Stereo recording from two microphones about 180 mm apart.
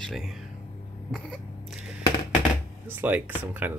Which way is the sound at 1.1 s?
Centre (ahead or behind).